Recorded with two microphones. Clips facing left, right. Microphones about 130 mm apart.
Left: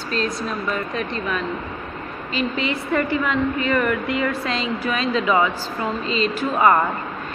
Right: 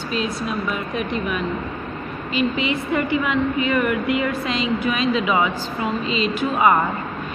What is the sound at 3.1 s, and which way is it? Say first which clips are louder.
Speech: right 1 dB; 10° right (ahead or behind).